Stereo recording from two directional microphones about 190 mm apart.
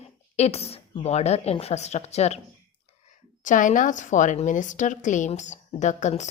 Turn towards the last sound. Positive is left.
turn(degrees=40)  # may be behind; listen again after turning